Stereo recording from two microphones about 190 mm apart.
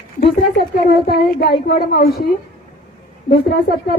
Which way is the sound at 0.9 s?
55° left (ahead or behind).